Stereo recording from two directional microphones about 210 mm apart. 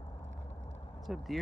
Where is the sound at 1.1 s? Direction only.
Centre (ahead or behind).